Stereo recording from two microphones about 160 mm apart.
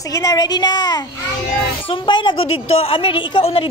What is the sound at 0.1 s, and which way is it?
A woman's voice, 20° left (ahead or behind).